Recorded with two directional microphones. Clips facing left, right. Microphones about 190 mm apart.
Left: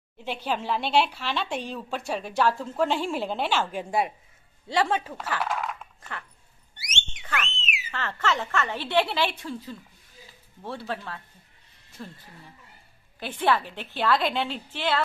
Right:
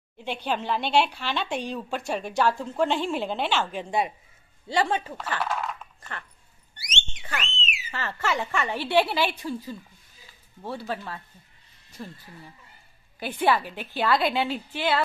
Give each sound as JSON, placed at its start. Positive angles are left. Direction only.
{"t": 0.2, "sound": "speech", "side_deg": 5}
{"t": 6.9, "sound": "a sound", "side_deg": -20}
{"t": 7.9, "sound": "a woman's voice", "side_deg": -10}
{"t": 13.2, "sound": "a woman's voice", "side_deg": -5}